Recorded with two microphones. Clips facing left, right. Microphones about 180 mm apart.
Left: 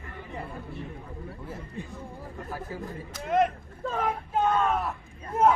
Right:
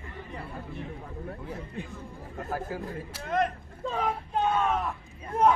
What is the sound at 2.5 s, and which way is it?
Speech, 50° right (ahead or behind).